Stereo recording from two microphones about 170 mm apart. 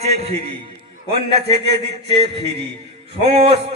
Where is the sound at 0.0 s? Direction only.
35° right (ahead or behind).